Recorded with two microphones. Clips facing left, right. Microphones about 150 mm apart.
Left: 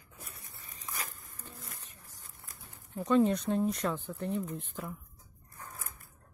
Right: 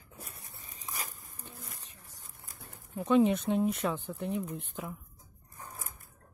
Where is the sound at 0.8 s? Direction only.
10° right (ahead or behind).